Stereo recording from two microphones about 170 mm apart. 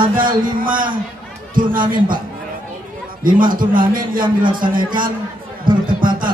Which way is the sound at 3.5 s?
55° right (ahead or behind).